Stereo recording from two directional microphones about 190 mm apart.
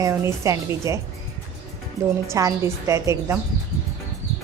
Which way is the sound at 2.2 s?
15° right (ahead or behind).